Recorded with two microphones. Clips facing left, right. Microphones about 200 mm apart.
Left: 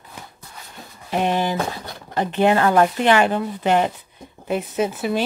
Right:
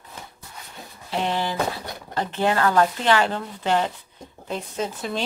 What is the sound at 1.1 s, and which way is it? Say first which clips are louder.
A woman's voice: left 4 dB; 15° left (ahead or behind).